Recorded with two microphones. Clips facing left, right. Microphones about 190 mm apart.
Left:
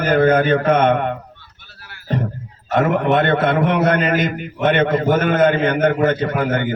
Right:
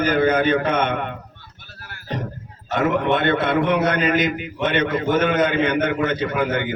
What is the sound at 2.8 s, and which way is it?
A man's voice, 50° left (ahead or behind).